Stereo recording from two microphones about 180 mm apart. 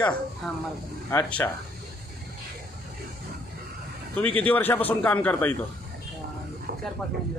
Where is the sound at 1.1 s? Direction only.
10° left (ahead or behind).